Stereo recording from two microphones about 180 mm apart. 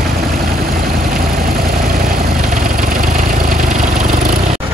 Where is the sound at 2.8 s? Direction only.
50° right (ahead or behind).